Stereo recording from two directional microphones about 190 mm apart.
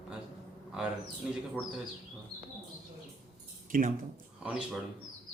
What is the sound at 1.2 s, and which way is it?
Speech, 5° right (ahead or behind).